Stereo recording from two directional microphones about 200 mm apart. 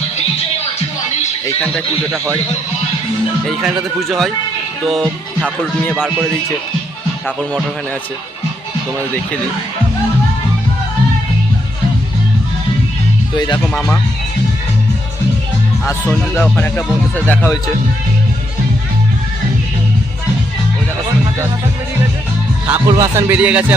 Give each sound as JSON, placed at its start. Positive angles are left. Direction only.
{"t": 1.5, "sound": "speech", "side_deg": 5}
{"t": 2.1, "sound": "speech", "side_deg": -10}
{"t": 3.4, "sound": "speech", "side_deg": 0}
{"t": 5.8, "sound": "speech", "side_deg": 5}
{"t": 13.3, "sound": "speech", "side_deg": 20}
{"t": 13.6, "sound": "speech", "side_deg": 5}
{"t": 16.3, "sound": "speech", "side_deg": 5}
{"t": 22.6, "sound": "speech", "side_deg": -15}